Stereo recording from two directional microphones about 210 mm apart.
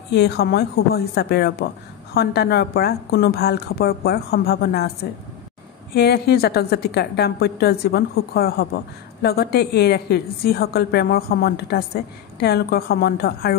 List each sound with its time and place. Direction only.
0.1 s a woman's voice: 50° left (ahead or behind)
5.9 s a woman's voice: 50° left (ahead or behind)